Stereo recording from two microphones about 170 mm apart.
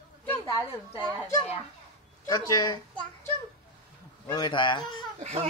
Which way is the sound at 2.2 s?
20° left (ahead or behind).